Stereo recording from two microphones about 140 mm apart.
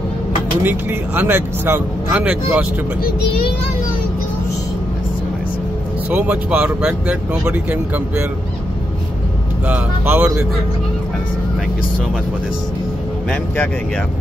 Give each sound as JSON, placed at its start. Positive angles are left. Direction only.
{"t": 0.7, "sound": "speech", "side_deg": -15}
{"t": 3.0, "sound": "a child's voice", "side_deg": 90}
{"t": 6.0, "sound": "speech", "side_deg": -10}
{"t": 9.7, "sound": "speech", "side_deg": -10}